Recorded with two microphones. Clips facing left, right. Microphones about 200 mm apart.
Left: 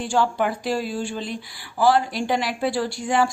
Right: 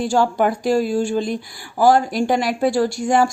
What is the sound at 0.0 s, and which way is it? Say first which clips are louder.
Speech: right 4 dB; 40° right (ahead or behind).